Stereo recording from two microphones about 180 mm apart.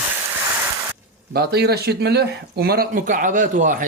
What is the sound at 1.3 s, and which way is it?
A man's voice, 60° right (ahead or behind).